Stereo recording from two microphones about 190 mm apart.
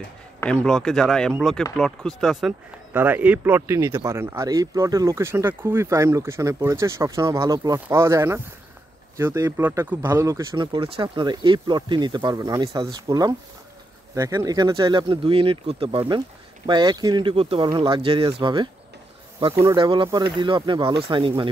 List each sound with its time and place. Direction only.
0.7 s speech: centre (ahead or behind)
2.9 s speech: 10° right (ahead or behind); by 21.5 s 25° right (ahead or behind)